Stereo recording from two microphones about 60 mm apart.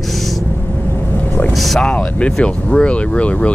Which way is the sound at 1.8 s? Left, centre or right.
Centre.